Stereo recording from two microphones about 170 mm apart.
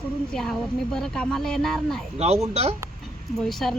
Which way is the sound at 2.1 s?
40° right (ahead or behind).